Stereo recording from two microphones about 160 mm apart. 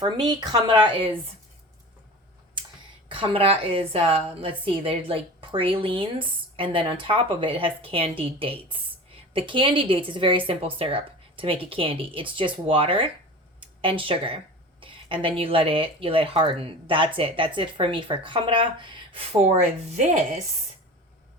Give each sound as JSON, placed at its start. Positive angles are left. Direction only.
{"t": 0.0, "sound": "speech", "side_deg": -25}
{"t": 3.1, "sound": "a woman's voice", "side_deg": -35}